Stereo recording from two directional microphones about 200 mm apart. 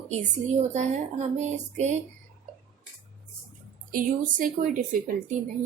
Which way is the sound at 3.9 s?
45° right (ahead or behind).